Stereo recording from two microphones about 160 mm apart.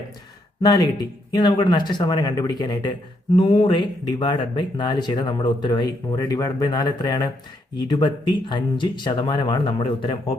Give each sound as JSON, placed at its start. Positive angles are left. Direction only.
{"t": 0.6, "sound": "speech", "side_deg": 25}